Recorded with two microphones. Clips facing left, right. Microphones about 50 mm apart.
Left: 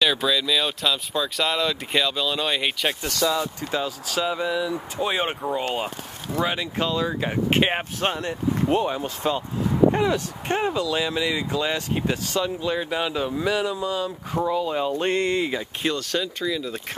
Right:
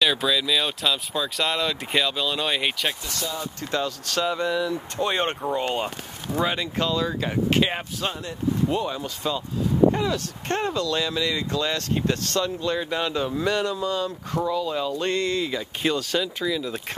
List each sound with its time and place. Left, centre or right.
0.0 s speech: centre
7.5 s speech: left
8.0 s speech: left
8.6 s speech: left
10.5 s speech: centre
14.5 s speech: left
15.8 s speech: centre